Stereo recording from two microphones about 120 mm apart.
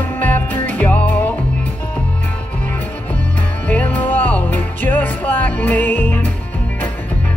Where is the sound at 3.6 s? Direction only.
15° left (ahead or behind).